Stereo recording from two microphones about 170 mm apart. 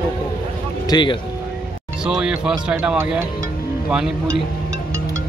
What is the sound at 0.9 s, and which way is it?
Speech, 30° left (ahead or behind).